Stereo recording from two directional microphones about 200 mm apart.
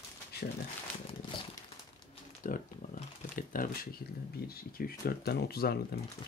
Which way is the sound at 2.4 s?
45° left (ahead or behind).